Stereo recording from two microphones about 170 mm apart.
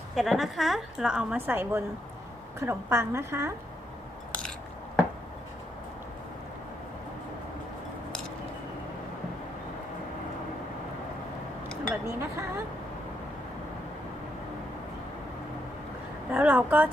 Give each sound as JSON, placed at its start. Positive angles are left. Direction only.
{"t": 0.2, "sound": "a woman's voice", "side_deg": 0}
{"t": 12.0, "sound": "chink", "side_deg": -15}
{"t": 16.3, "sound": "a sound", "side_deg": -10}